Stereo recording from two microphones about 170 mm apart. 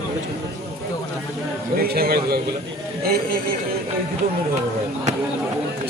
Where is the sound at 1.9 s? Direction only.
65° right (ahead or behind).